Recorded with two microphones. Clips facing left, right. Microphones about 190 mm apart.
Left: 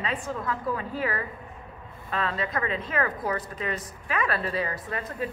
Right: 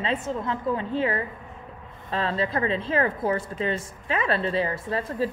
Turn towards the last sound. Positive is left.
turn(degrees=-30)  # may be behind; listen again after turning